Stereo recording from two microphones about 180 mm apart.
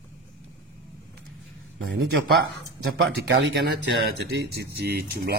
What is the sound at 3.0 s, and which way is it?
Speech, 80° right.